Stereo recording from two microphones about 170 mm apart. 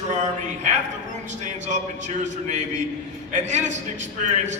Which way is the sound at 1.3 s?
45° right (ahead or behind).